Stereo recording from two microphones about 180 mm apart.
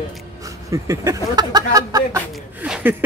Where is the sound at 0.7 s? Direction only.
20° right (ahead or behind).